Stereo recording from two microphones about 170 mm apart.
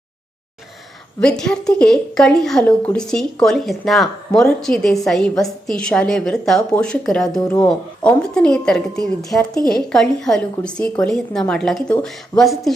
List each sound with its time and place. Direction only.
1.2 s a woman's voice: 5° left (ahead or behind)